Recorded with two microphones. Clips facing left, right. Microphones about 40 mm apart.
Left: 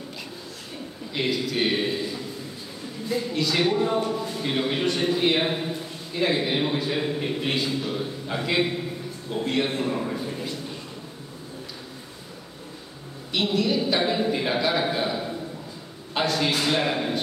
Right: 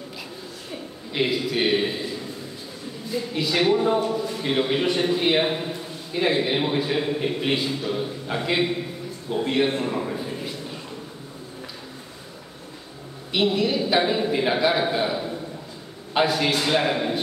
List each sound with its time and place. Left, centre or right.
1.1 s a man's voice: centre
3.3 s a man's voice: centre
13.3 s a man's voice: centre